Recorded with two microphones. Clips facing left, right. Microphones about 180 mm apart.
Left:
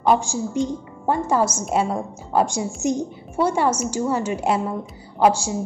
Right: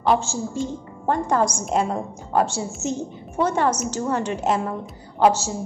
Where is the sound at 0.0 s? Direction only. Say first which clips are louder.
Left 2 dB; 15° left (ahead or behind).